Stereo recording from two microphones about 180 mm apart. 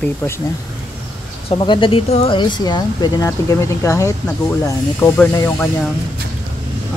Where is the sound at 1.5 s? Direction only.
25° left (ahead or behind).